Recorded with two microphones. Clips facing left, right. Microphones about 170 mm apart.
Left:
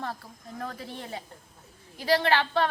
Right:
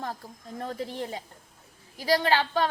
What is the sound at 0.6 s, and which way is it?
Speech, 25° right (ahead or behind).